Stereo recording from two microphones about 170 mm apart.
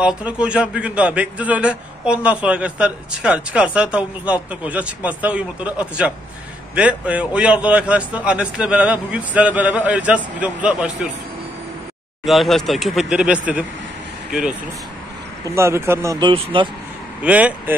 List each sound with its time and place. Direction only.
0.0 s a man's voice: 5° right (ahead or behind)
12.3 s speech: centre (ahead or behind)
15.4 s a man's voice: 15° right (ahead or behind)
17.2 s a man's voice: 10° right (ahead or behind)